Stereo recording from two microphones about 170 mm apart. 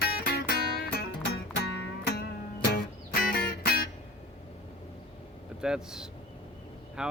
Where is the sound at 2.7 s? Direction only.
65° left (ahead or behind).